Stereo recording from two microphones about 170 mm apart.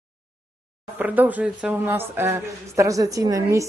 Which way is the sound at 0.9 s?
10° right (ahead or behind).